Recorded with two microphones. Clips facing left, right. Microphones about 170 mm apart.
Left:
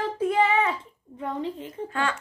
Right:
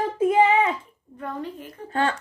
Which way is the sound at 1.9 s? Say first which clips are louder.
Right 5 dB; 35° right (ahead or behind).